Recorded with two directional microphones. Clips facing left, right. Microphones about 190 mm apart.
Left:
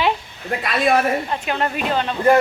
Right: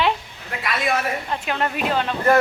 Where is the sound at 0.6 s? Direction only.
50° left (ahead or behind).